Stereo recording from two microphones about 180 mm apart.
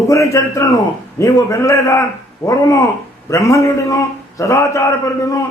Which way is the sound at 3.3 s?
15° left (ahead or behind).